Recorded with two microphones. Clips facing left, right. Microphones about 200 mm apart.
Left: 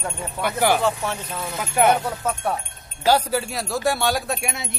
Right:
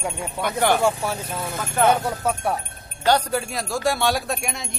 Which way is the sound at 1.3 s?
50° right (ahead or behind).